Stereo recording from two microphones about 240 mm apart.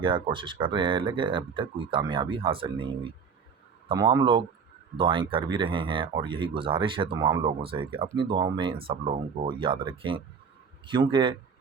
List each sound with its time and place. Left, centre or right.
0.0 s speech: centre